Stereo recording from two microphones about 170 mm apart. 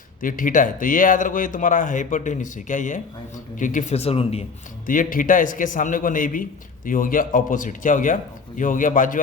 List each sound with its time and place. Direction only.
0.2 s a man's voice: 55° left (ahead or behind); by 4.4 s 35° left (ahead or behind)
4.9 s a man's voice: 55° left (ahead or behind)